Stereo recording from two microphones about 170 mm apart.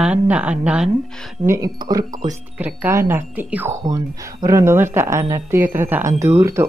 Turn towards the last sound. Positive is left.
turn(degrees=-15)  # may be behind; listen again after turning